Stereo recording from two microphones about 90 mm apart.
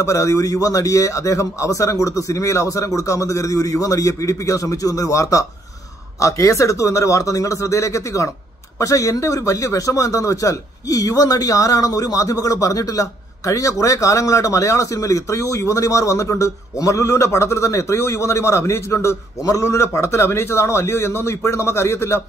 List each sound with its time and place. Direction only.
0.0 s speech: 35° left (ahead or behind)